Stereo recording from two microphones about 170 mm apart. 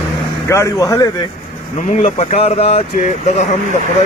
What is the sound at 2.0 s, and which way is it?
Speech, 40° left (ahead or behind).